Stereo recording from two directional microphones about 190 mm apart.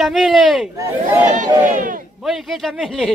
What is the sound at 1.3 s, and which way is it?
Speech, 45° right (ahead or behind).